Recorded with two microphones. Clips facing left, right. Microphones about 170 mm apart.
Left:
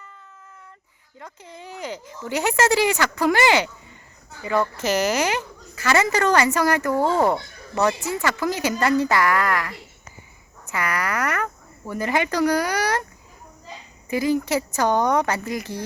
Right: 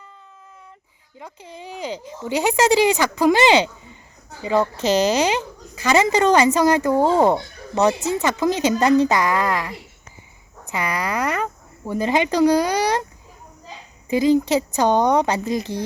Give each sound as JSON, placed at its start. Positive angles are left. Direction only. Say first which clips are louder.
{"t": 1.2, "sound": "speech", "louder": "right 3 dB", "side_deg": -15}
{"t": 14.1, "sound": "speech", "louder": "right 5 dB", "side_deg": -20}